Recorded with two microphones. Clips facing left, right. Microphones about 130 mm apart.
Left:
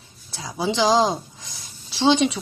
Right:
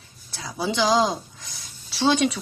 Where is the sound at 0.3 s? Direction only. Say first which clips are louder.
Left 2 dB; 25° left (ahead or behind).